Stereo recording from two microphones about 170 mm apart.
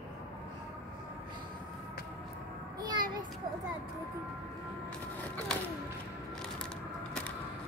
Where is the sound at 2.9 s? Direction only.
25° right (ahead or behind).